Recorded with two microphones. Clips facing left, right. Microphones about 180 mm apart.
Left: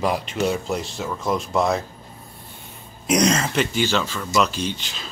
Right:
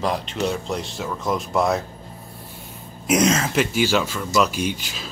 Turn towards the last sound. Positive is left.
turn(degrees=-5)  # may be behind; listen again after turning